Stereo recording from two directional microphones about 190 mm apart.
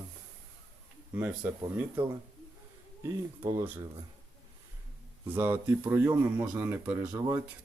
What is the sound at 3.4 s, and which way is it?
Speech, 15° right (ahead or behind).